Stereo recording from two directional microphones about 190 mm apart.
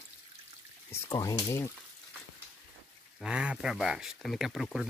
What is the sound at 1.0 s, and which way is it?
Speech, 15° left (ahead or behind).